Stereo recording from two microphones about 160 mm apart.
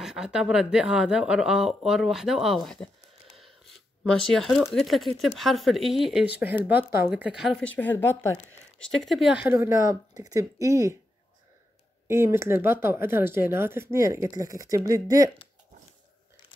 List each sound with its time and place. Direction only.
0.0 s a woman's voice: 5° right (ahead or behind); by 11.0 s 20° right (ahead or behind)
12.1 s speech: 15° right (ahead or behind)